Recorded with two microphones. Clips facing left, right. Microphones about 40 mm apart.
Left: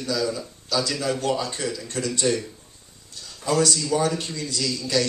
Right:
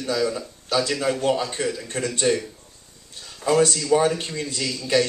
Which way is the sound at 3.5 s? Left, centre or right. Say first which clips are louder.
Right 3 dB; right.